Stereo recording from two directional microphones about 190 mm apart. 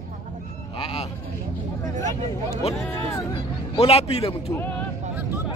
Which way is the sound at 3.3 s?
30° left (ahead or behind).